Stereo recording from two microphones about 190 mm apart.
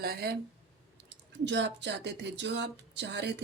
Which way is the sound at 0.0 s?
55° right (ahead or behind).